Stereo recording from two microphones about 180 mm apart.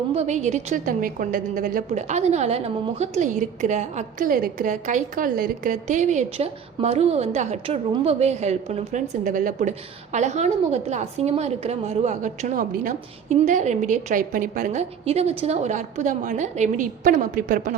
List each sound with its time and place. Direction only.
0.1 s a woman's voice: 40° right (ahead or behind)